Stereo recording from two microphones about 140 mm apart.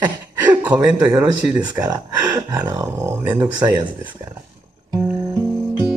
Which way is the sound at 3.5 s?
30° right (ahead or behind).